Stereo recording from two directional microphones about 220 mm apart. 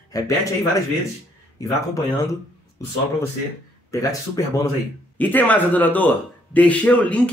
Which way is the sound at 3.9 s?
15° left (ahead or behind).